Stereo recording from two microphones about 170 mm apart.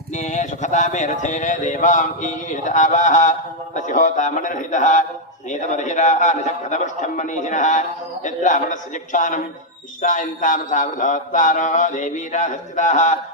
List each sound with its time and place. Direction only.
0.1 s a man's voice: 45° left (ahead or behind)